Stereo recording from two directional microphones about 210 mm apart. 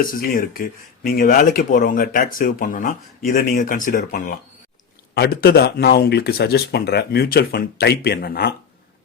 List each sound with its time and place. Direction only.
0.0 s speech: 45° left (ahead or behind)